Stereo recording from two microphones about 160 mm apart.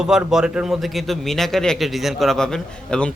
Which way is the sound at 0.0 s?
5° right (ahead or behind).